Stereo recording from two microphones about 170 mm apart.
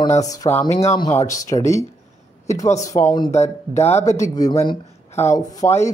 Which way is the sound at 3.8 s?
40° left (ahead or behind).